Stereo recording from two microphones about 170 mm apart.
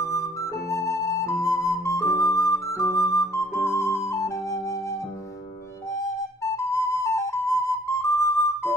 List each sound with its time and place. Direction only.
0.0 s flute: 20° left (ahead or behind)
4.1 s music: 20° left (ahead or behind)
6.5 s flute: 20° left (ahead or behind)